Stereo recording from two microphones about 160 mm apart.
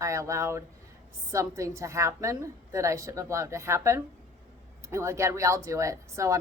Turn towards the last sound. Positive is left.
turn(degrees=-20)  # may be behind; listen again after turning